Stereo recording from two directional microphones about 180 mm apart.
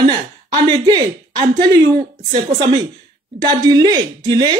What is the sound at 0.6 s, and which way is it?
Speech, 25° right (ahead or behind).